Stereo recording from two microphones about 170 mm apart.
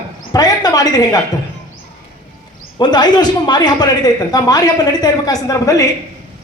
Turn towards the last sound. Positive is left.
turn(degrees=20)  # may be behind; listen again after turning